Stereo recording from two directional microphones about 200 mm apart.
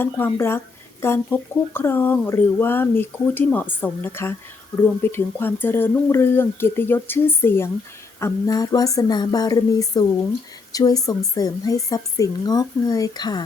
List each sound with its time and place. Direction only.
0.0 s speech: 10° left (ahead or behind)